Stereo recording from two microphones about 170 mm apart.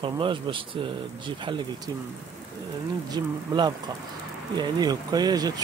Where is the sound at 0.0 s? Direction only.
30° right (ahead or behind).